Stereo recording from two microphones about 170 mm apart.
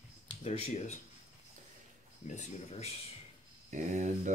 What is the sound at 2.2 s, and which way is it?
Speech, 40° left (ahead or behind).